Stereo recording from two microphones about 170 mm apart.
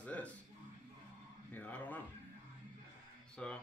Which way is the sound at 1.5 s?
10° left (ahead or behind).